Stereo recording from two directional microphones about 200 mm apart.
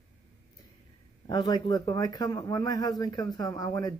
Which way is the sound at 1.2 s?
20° left (ahead or behind).